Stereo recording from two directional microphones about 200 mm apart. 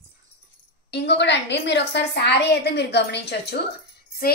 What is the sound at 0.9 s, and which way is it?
A woman's voice, 60° left (ahead or behind).